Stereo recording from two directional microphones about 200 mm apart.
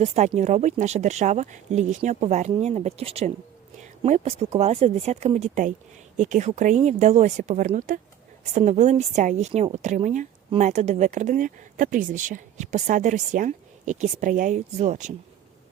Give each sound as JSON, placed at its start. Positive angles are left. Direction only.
{"t": 0.0, "sound": "a woman's voice", "side_deg": -35}
{"t": 3.8, "sound": "a sound", "side_deg": -35}
{"t": 4.5, "sound": "a woman's voice", "side_deg": -30}